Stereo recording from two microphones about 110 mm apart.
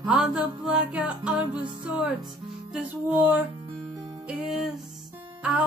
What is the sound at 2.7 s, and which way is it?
Music, 15° right (ahead or behind).